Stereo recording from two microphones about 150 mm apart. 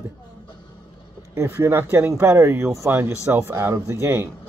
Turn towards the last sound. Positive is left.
turn(degrees=-20)  # may be behind; listen again after turning